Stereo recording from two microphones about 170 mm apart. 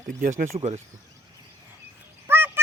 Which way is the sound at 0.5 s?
40° right (ahead or behind).